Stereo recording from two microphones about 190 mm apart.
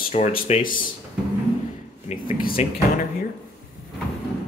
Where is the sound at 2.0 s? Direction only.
45° left (ahead or behind).